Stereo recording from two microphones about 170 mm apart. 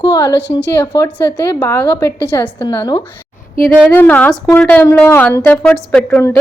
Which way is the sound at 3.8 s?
10° left (ahead or behind).